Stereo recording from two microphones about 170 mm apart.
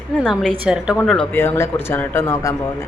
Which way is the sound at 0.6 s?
5° right (ahead or behind).